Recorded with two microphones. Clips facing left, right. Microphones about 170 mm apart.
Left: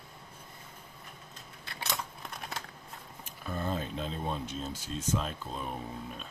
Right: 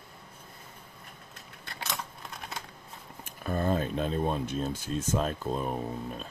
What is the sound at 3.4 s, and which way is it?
Speech, 55° right (ahead or behind).